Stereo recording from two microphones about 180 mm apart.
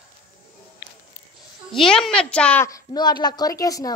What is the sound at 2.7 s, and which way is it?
A woman's voice, 20° left (ahead or behind).